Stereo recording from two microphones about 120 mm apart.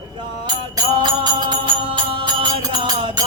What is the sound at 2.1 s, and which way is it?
Music, 45° right (ahead or behind).